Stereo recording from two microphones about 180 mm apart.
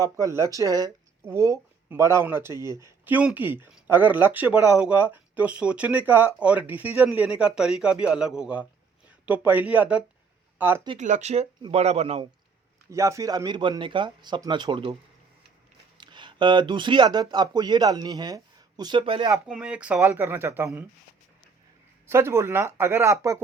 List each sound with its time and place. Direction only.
0.0 s speech: 20° right (ahead or behind)
10.8 s speech: 40° right (ahead or behind)
12.9 s speech: 15° right (ahead or behind)
16.0 s speech: 25° right (ahead or behind)
19.5 s speech: 5° right (ahead or behind)
22.1 s speech: 15° right (ahead or behind)